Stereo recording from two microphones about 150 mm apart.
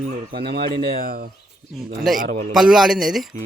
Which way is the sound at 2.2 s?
65° right (ahead or behind).